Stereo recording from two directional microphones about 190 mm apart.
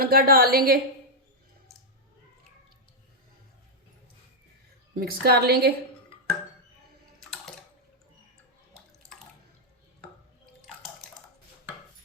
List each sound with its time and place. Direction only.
0.0 s a woman's voice: 50° right (ahead or behind)
4.9 s a woman's voice: 55° right (ahead or behind)
7.2 s a sound: centre (ahead or behind)